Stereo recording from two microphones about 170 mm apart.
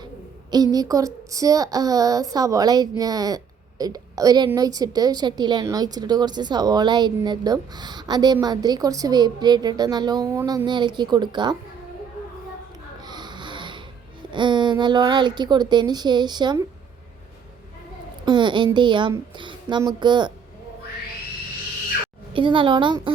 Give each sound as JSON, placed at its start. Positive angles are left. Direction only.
{"t": 0.5, "sound": "speech", "side_deg": -20}
{"t": 13.1, "sound": "wheeze", "side_deg": -25}
{"t": 14.2, "sound": "speech", "side_deg": -30}
{"t": 18.3, "sound": "speech", "side_deg": -25}
{"t": 22.3, "sound": "speech", "side_deg": -30}